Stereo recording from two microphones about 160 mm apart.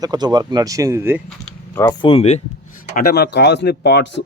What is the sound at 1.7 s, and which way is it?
Speech, 15° left (ahead or behind).